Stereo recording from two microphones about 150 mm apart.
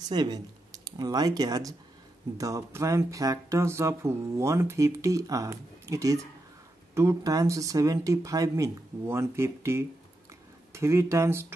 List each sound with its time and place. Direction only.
0.1 s speech: 25° right (ahead or behind)